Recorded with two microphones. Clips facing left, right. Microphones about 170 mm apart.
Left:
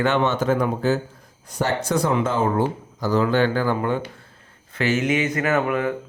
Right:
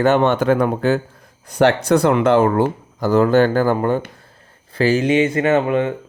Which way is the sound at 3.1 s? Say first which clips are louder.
Right 6 dB; 45° right (ahead or behind).